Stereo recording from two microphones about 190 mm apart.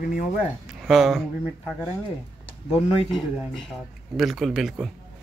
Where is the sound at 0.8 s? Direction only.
Centre (ahead or behind).